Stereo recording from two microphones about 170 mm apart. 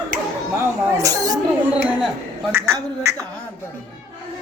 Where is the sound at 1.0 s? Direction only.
20° right (ahead or behind).